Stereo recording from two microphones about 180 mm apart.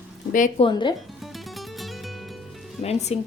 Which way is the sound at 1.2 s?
Centre (ahead or behind).